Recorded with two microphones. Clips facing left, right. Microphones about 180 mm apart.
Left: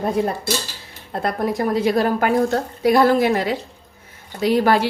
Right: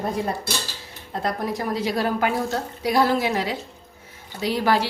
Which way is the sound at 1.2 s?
55° left (ahead or behind).